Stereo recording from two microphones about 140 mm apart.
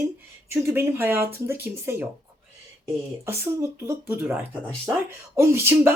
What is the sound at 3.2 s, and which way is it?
Speech, 15° right (ahead or behind).